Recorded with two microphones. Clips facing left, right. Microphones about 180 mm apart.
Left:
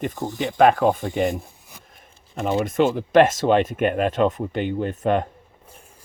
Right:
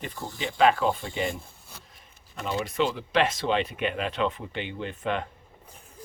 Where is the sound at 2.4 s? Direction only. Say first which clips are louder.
Left 7 dB; 50° left (ahead or behind).